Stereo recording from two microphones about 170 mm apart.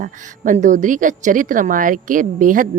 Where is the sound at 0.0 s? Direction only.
50° right (ahead or behind).